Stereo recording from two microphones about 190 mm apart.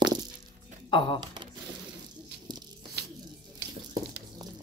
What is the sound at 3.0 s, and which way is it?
Music, 60° right (ahead or behind).